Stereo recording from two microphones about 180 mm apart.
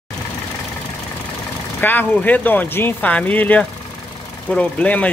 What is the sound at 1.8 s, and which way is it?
Speech, 10° left (ahead or behind).